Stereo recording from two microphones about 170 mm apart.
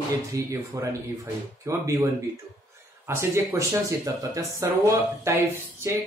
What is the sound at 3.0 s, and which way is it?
Speech, 15° right (ahead or behind).